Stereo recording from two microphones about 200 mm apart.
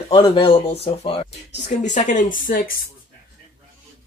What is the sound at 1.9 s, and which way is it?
Speech, 40° left (ahead or behind).